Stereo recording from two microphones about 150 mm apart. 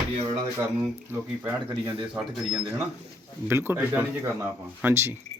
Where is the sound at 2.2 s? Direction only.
Centre (ahead or behind).